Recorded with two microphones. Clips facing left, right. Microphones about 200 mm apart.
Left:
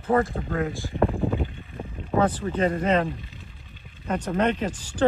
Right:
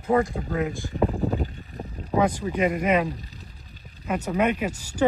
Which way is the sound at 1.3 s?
40° right (ahead or behind).